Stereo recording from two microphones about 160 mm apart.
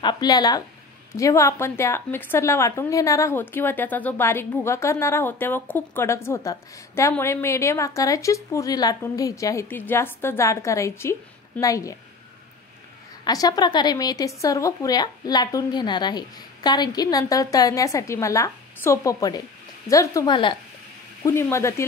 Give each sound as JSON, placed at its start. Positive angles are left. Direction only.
{"t": 0.0, "sound": "a woman's voice", "side_deg": 25}
{"t": 13.2, "sound": "a woman's voice", "side_deg": 25}